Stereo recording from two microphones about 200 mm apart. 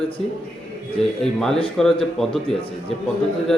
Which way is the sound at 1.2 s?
Centre (ahead or behind).